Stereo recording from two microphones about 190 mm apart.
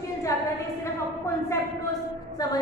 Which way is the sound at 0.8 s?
15° left (ahead or behind).